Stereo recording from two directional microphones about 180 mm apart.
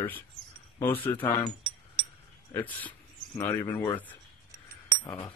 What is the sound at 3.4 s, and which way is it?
Speech, 15° left (ahead or behind).